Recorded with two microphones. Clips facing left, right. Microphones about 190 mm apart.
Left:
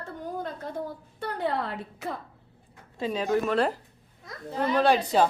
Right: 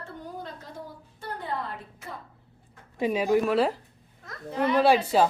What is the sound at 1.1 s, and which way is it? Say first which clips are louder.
Speech: left 4 dB; 75° left (ahead or behind).